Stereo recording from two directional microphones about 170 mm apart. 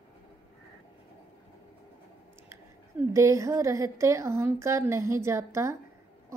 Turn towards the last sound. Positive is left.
turn(degrees=-15)  # may be behind; listen again after turning